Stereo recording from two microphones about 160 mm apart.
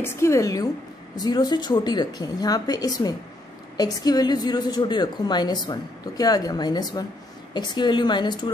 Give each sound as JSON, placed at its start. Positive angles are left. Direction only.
{"t": 0.0, "sound": "a woman's voice", "side_deg": 15}